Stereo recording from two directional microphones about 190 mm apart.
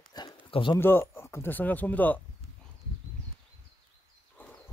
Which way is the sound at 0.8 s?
10° left (ahead or behind).